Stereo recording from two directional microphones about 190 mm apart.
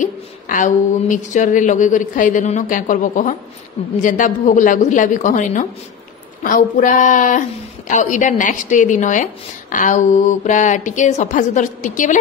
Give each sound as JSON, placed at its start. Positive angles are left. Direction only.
{"t": 0.0, "sound": "speech", "side_deg": 40}